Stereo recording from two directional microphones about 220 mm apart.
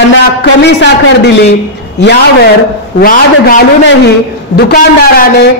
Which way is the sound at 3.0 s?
40° left (ahead or behind).